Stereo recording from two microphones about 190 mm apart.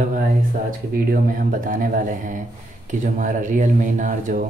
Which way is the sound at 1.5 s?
45° right (ahead or behind).